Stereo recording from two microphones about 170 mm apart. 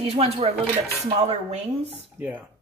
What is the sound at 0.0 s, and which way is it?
Speech, 35° right (ahead or behind).